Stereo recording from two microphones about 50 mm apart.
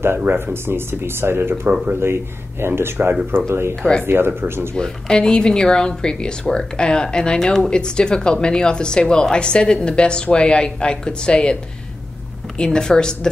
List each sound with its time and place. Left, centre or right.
0.0 s speech: right
2.6 s speech: right
4.0 s speech: right
4.7 s speech: centre
12.5 s speech: centre